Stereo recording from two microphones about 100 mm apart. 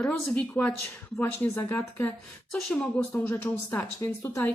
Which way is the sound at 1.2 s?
25° left (ahead or behind).